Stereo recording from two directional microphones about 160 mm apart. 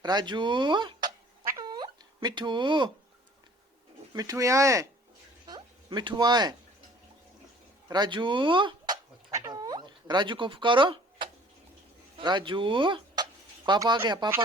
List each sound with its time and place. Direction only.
0.0 s speech: 25° right (ahead or behind)
1.5 s a sound: 25° right (ahead or behind)
4.1 s speech: 20° right (ahead or behind)
7.9 s speech: 25° right (ahead or behind)
9.3 s a sound: 20° right (ahead or behind)
12.1 s speech: 30° right (ahead or behind)